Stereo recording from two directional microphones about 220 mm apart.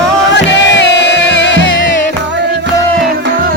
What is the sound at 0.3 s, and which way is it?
Music, 55° left (ahead or behind).